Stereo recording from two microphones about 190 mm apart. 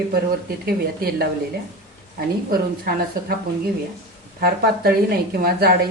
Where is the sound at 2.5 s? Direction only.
50° right (ahead or behind).